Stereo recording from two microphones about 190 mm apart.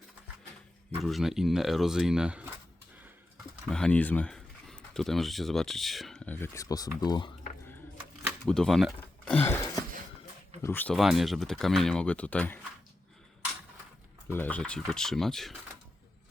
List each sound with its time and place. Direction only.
1.0 s speech: centre (ahead or behind)
3.7 s speech: 5° left (ahead or behind); by 7.3 s 20° left (ahead or behind)
8.4 s speech: centre (ahead or behind)
10.9 s speech: centre (ahead or behind)
14.3 s speech: 10° left (ahead or behind)